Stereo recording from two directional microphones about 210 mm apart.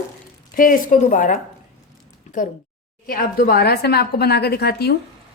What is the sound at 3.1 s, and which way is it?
A woman's voice, 45° left (ahead or behind).